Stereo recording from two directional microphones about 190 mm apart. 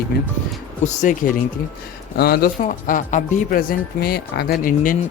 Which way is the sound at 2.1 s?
55° left (ahead or behind).